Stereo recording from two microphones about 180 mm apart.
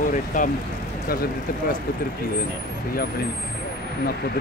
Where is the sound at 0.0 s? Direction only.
45° left (ahead or behind).